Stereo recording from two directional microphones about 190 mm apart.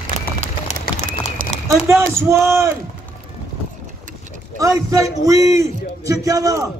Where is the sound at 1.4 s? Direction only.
45° right (ahead or behind).